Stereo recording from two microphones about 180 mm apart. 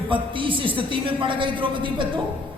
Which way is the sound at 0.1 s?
30° right (ahead or behind).